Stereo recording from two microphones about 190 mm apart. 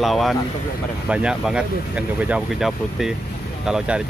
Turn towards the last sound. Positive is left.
turn(degrees=-5)  # may be behind; listen again after turning